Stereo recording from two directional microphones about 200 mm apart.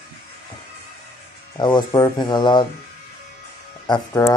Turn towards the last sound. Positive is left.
turn(degrees=15)  # may be behind; listen again after turning